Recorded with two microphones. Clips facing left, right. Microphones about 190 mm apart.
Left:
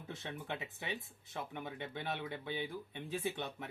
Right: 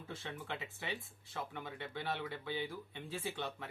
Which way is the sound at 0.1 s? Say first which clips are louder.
Left 1 dB; 20° left (ahead or behind).